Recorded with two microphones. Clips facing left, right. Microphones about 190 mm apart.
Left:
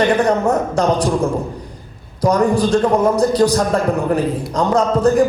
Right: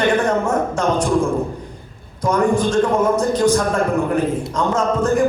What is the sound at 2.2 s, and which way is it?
A man's voice, 35° left (ahead or behind).